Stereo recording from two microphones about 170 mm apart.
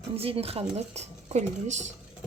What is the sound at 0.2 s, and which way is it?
Speech, 35° right (ahead or behind).